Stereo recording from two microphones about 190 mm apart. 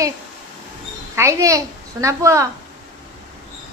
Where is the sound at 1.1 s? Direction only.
15° right (ahead or behind).